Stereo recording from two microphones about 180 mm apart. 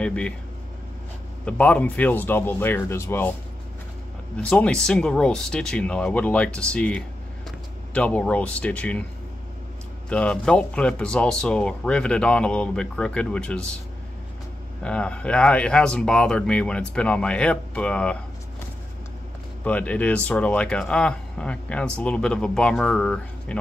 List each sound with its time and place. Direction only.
0.0 s speech: 5° left (ahead or behind)
1.4 s speech: 5° left (ahead or behind)
4.5 s speech: 5° left (ahead or behind)
10.0 s speech: 5° left (ahead or behind)
14.8 s speech: 5° left (ahead or behind)
19.6 s speech: 10° left (ahead or behind)